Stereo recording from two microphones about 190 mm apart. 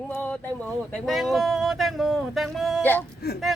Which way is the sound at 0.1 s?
10° left (ahead or behind).